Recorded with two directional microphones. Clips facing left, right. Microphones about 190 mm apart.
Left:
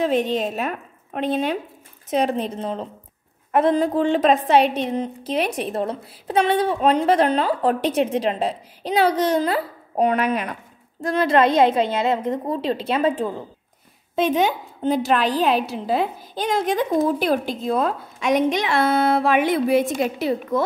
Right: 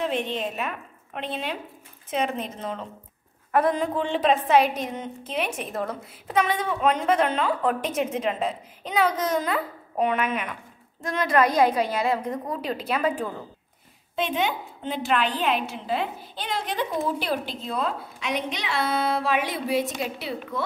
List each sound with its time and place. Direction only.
0.0 s a woman's voice: 40° left (ahead or behind)
4.6 s a woman's voice: 30° left (ahead or behind)
14.1 s a woman's voice: 45° left (ahead or behind)